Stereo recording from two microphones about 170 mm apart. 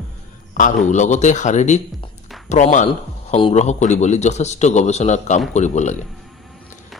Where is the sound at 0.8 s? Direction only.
45° left (ahead or behind).